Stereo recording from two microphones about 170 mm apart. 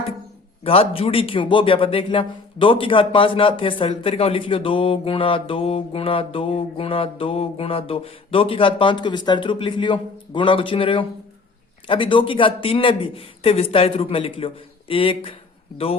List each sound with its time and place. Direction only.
0.6 s speech: 35° left (ahead or behind)